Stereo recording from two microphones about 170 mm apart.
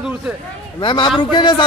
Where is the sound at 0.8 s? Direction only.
30° left (ahead or behind).